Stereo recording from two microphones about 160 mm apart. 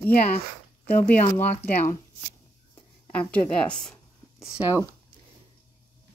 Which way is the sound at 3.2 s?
5° left (ahead or behind).